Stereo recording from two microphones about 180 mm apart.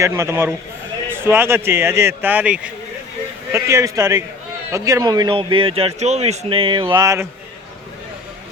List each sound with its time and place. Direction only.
0.0 s speech: 15° right (ahead or behind)
3.5 s a man's voice: 15° right (ahead or behind)
7.0 s speech: 15° right (ahead or behind)